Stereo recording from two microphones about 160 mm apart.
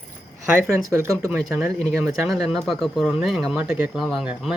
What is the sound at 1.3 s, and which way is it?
Speech, centre (ahead or behind).